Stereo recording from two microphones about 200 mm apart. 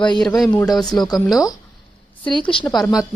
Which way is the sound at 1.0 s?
20° left (ahead or behind).